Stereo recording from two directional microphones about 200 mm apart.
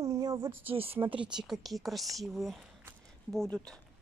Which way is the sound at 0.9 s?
5° right (ahead or behind).